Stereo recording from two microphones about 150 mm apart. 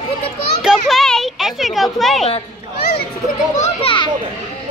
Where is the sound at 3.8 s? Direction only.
35° left (ahead or behind).